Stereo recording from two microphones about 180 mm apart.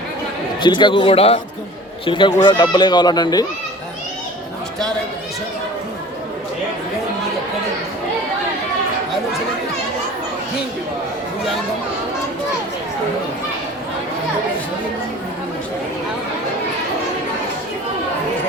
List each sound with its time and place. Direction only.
0.6 s speech: 25° left (ahead or behind)